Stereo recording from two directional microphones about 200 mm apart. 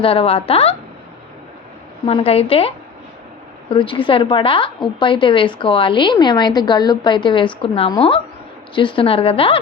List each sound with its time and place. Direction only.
0.0 s a woman's voice: 30° left (ahead or behind)
2.0 s a woman's voice: 30° left (ahead or behind)